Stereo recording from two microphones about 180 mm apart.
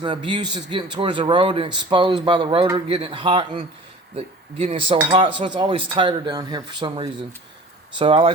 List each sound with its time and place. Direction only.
0.0 s a man's voice: 25° right (ahead or behind)